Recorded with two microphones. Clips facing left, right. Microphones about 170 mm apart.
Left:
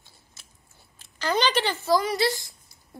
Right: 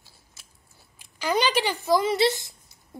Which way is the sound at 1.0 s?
10° right (ahead or behind).